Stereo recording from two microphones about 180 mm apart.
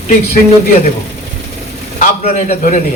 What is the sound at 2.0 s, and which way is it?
Speech, 40° left (ahead or behind).